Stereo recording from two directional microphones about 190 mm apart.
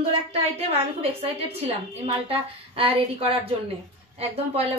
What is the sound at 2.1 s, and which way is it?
A woman's voice, 30° right (ahead or behind).